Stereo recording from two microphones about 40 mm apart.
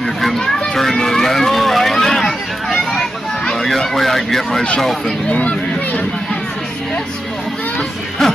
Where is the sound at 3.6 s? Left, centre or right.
Centre.